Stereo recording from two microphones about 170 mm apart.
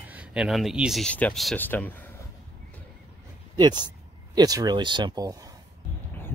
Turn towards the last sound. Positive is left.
turn(degrees=-20)  # may be behind; listen again after turning